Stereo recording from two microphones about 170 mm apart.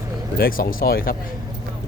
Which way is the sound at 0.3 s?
60° left (ahead or behind).